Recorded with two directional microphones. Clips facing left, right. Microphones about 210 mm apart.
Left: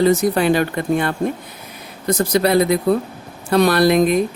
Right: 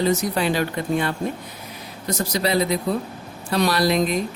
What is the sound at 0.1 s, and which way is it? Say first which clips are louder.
Speech: left 6 dB; 55° left (ahead or behind).